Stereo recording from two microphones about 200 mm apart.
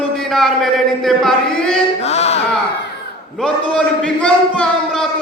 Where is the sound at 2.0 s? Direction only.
30° left (ahead or behind).